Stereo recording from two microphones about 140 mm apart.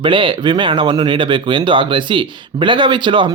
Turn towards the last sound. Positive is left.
turn(degrees=-35)  # may be behind; listen again after turning